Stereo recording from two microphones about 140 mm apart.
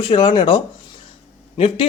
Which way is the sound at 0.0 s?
40° left (ahead or behind).